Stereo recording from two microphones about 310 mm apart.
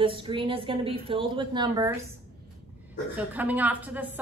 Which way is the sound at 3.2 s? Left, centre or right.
Centre.